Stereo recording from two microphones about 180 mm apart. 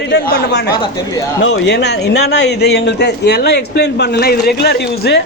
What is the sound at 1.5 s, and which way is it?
Speech, 75° left (ahead or behind).